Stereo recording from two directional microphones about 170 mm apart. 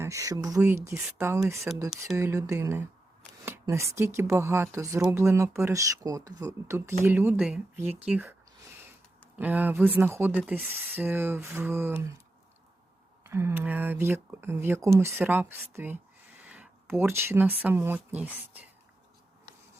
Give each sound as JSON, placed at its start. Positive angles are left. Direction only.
{"t": 0.0, "sound": "speech", "side_deg": -20}
{"t": 13.2, "sound": "speech", "side_deg": -15}